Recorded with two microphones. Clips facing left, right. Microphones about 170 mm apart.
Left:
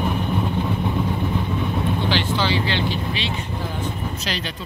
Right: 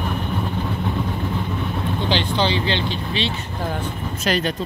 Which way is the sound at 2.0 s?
20° right (ahead or behind).